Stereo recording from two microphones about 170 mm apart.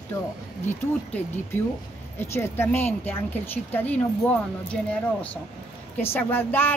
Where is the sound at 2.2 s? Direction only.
15° left (ahead or behind).